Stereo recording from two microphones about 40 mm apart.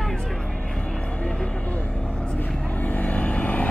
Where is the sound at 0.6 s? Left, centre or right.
Left.